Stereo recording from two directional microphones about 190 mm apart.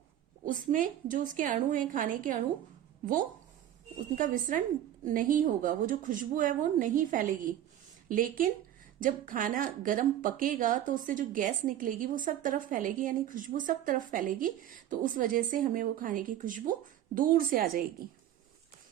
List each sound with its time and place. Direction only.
0.4 s speech: 45° right (ahead or behind)
4.1 s speech: 45° right (ahead or behind)